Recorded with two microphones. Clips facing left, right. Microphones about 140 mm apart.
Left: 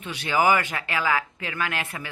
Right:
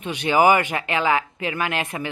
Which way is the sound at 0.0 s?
15° right (ahead or behind).